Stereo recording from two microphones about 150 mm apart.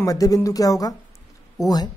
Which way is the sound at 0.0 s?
20° left (ahead or behind).